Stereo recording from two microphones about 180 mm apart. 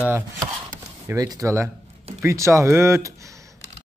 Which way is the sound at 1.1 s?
20° right (ahead or behind).